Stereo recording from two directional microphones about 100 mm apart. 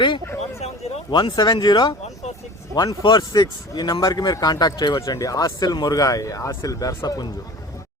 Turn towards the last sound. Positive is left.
turn(degrees=40)  # may be behind; listen again after turning